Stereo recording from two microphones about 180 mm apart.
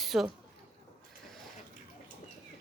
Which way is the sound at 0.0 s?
Centre (ahead or behind).